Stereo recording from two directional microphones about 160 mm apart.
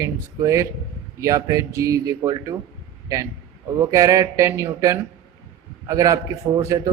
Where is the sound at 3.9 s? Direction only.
20° right (ahead or behind).